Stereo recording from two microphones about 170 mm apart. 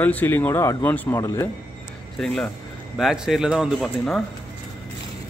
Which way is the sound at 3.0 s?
Centre (ahead or behind).